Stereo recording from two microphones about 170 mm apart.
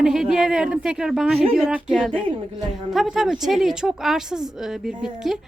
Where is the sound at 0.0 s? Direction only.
Centre (ahead or behind).